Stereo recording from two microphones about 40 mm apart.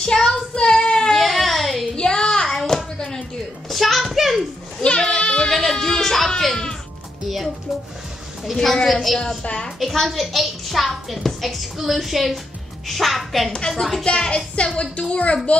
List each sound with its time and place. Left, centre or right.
0.0 s child singing: centre
1.1 s baby cry: centre
2.0 s hands: centre
3.7 s a sound: centre
5.2 s a sound: left
5.5 s music: centre
7.2 s a child's voice: centre
8.5 s a woman's voice: centre
9.4 s a woman's voice: left
9.8 s a woman's voice: centre
14.0 s a woman's voice: centre
14.8 s a woman's voice: left